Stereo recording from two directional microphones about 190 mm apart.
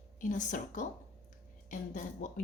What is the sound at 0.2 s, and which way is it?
Speech, 40° left (ahead or behind).